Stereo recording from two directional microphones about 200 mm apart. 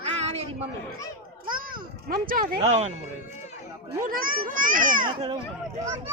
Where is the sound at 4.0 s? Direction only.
45° right (ahead or behind).